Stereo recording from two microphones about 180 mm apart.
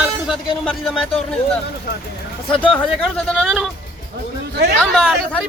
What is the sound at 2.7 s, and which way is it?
Speech, 5° left (ahead or behind).